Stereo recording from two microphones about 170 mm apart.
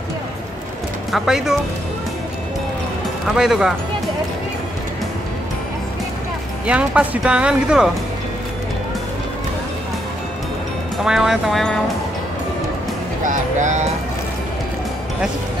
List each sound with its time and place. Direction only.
1.1 s speech: centre (ahead or behind)
3.3 s speech: 5° right (ahead or behind)
6.6 s speech: 5° right (ahead or behind)
11.1 s speech: 5° right (ahead or behind)
13.2 s speech: 50° right (ahead or behind)